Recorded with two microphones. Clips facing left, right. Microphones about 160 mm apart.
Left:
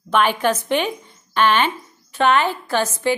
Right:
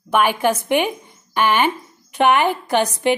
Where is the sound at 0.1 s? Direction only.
10° right (ahead or behind).